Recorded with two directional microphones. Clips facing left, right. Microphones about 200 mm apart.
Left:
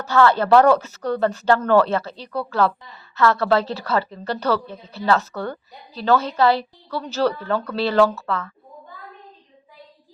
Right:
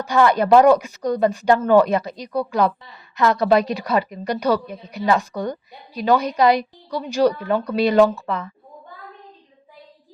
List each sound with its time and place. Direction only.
0.0 s a woman's voice: 15° right (ahead or behind)